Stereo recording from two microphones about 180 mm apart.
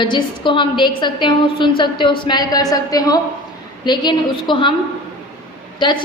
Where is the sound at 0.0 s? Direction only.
25° left (ahead or behind).